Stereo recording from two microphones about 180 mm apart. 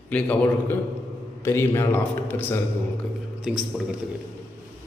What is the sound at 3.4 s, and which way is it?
Speech, centre (ahead or behind).